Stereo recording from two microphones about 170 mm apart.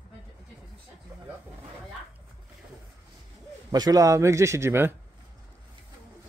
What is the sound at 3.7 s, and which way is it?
Speech, 20° right (ahead or behind).